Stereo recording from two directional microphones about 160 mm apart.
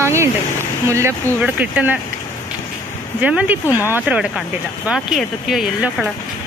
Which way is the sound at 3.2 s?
10° right (ahead or behind).